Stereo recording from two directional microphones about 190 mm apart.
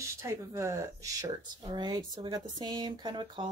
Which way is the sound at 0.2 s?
15° right (ahead or behind).